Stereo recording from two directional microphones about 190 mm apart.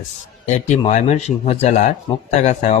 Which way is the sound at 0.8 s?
40° left (ahead or behind).